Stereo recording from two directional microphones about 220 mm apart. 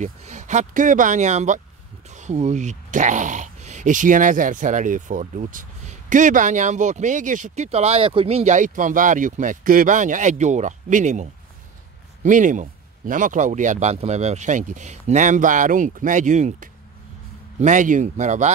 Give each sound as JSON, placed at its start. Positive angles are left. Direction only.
{"t": 0.0, "sound": "speech", "side_deg": -30}